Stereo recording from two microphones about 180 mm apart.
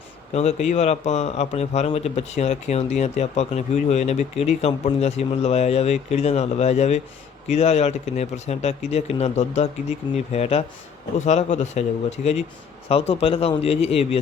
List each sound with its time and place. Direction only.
0.3 s speech: 40° left (ahead or behind)